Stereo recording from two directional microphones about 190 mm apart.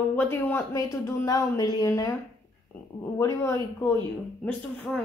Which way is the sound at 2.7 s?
10° left (ahead or behind).